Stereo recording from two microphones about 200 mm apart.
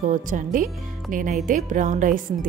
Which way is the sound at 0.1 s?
40° right (ahead or behind).